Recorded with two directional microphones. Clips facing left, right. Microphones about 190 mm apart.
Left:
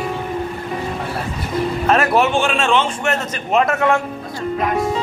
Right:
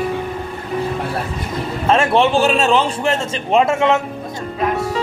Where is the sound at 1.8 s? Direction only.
25° right (ahead or behind).